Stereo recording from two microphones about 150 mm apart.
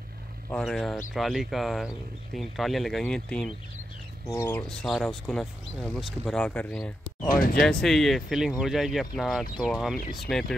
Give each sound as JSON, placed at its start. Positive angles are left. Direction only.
{"t": 0.5, "sound": "speech", "side_deg": 5}
{"t": 4.3, "sound": "speech", "side_deg": 15}
{"t": 7.2, "sound": "speech", "side_deg": 65}
{"t": 7.6, "sound": "speech", "side_deg": 5}